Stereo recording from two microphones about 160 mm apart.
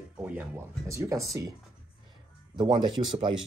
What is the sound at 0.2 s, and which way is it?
Speech, 10° right (ahead or behind).